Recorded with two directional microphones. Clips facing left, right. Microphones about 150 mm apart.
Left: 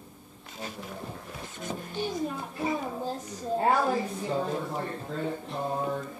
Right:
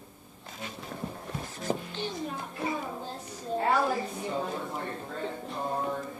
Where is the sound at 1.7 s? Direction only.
35° right (ahead or behind).